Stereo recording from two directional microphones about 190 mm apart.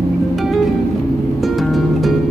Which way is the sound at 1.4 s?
Centre (ahead or behind).